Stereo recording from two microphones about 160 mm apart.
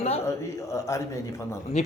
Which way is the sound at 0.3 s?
20° left (ahead or behind).